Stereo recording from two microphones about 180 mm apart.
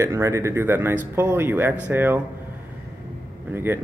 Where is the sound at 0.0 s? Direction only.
15° right (ahead or behind).